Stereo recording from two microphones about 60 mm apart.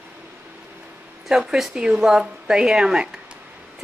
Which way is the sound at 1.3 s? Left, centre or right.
Centre.